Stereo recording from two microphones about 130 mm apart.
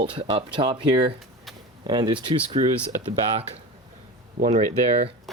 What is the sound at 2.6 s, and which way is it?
Speech, 55° right (ahead or behind).